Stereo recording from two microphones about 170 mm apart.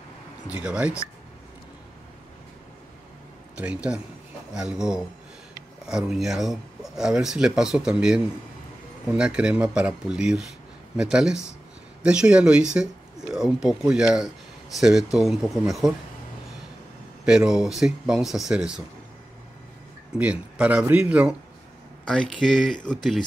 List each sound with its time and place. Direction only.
0.5 s speech: 10° right (ahead or behind)
3.5 s speech: 5° right (ahead or behind)
17.2 s speech: 5° right (ahead or behind)
20.2 s speech: 5° right (ahead or behind)
22.0 s speech: 5° left (ahead or behind)